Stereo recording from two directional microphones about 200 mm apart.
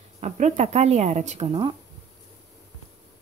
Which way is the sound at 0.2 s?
35° right (ahead or behind).